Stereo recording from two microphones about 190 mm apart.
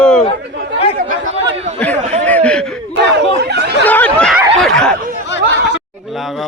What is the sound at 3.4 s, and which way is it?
Chatter, 65° right (ahead or behind).